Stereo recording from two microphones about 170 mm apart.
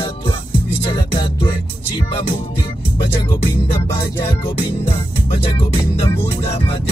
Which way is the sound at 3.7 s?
30° left (ahead or behind).